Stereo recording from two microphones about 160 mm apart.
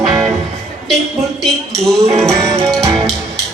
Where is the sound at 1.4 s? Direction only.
5° left (ahead or behind).